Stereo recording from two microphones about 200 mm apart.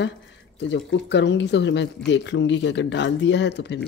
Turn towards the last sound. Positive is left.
turn(degrees=60)  # may be behind; listen again after turning